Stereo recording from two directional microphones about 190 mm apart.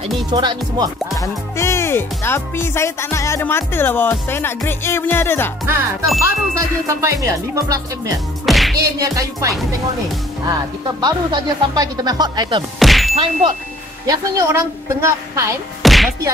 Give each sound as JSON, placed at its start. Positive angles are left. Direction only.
{"t": 0.3, "sound": "speech", "side_deg": -25}
{"t": 1.1, "sound": "speech", "side_deg": 15}
{"t": 6.5, "sound": "speech", "side_deg": -15}
{"t": 8.5, "sound": "speech", "side_deg": 0}
{"t": 8.7, "sound": "speech", "side_deg": -20}
{"t": 11.0, "sound": "speech", "side_deg": -20}
{"t": 12.7, "sound": "ding", "side_deg": 0}
{"t": 13.1, "sound": "speech", "side_deg": -30}
{"t": 14.0, "sound": "speech", "side_deg": -20}
{"t": 15.8, "sound": "music", "side_deg": 0}